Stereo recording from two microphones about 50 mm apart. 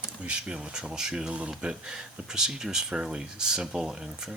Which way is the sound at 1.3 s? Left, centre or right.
Right.